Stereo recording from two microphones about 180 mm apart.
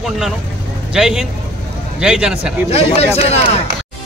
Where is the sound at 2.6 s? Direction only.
35° left (ahead or behind).